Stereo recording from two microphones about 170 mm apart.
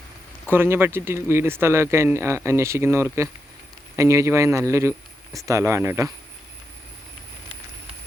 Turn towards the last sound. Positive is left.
turn(degrees=-15)  # may be behind; listen again after turning